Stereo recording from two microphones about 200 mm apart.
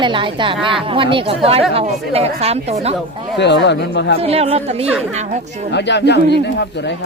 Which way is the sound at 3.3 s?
60° left (ahead or behind).